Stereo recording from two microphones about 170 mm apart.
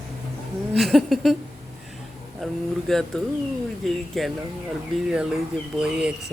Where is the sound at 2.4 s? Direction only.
Centre (ahead or behind).